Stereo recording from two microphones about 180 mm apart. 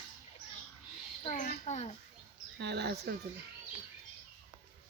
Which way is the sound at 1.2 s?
45° left (ahead or behind).